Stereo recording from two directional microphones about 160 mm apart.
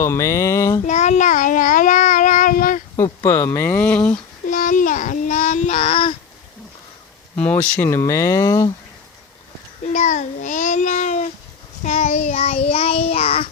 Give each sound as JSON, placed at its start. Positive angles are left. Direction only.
{"t": 0.0, "sound": "a sound", "side_deg": 20}
{"t": 0.9, "sound": "child singing", "side_deg": 45}
{"t": 2.9, "sound": "speech", "side_deg": 20}
{"t": 4.4, "sound": "child singing", "side_deg": 55}
{"t": 7.3, "sound": "speech", "side_deg": 10}
{"t": 9.8, "sound": "a child's voice", "side_deg": 45}
{"t": 11.8, "sound": "child singing", "side_deg": 45}